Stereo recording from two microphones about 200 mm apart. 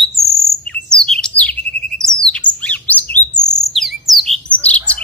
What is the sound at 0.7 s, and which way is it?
Bird, 5° left (ahead or behind).